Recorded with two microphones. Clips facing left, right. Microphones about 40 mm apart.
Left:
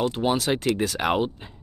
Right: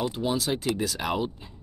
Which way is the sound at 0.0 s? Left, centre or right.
Left.